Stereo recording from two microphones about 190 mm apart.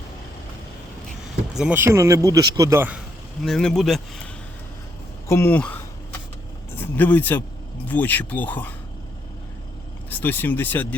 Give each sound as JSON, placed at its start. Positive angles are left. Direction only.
{"t": 1.5, "sound": "speech", "side_deg": -5}
{"t": 3.4, "sound": "speech", "side_deg": 5}
{"t": 5.3, "sound": "a sound", "side_deg": 10}
{"t": 6.7, "sound": "speech", "side_deg": 10}
{"t": 10.1, "sound": "speech", "side_deg": 10}